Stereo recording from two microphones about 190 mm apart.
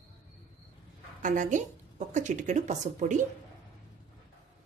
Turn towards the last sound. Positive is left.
turn(degrees=-40)  # may be behind; listen again after turning